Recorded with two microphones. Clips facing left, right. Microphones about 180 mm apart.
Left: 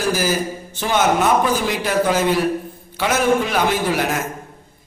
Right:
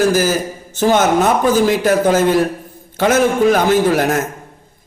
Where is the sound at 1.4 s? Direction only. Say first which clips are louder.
Right 7 dB; 45° right (ahead or behind).